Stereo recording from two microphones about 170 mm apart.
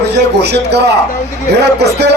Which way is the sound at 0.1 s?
80° right.